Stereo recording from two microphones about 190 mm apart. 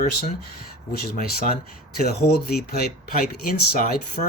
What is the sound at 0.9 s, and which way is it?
Speech, 50° left (ahead or behind).